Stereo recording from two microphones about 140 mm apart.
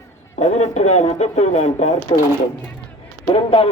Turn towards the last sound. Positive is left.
turn(degrees=40)  # may be behind; listen again after turning